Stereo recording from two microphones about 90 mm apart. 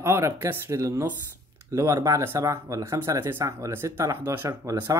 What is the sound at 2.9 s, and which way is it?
Speech, 30° right (ahead or behind).